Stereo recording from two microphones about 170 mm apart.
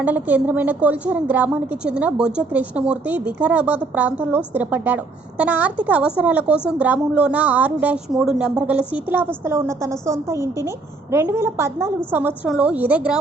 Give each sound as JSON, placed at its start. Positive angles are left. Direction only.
{"t": 0.0, "sound": "a woman's voice", "side_deg": -10}